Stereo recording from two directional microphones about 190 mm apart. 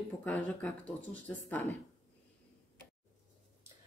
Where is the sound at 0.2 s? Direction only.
5° left (ahead or behind).